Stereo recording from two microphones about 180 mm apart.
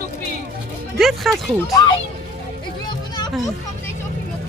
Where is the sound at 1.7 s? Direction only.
20° left (ahead or behind).